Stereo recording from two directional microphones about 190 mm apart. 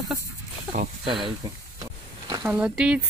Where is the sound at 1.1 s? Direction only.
25° right (ahead or behind).